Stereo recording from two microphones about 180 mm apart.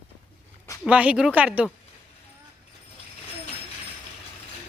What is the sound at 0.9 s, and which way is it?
Speech, 5° right (ahead or behind).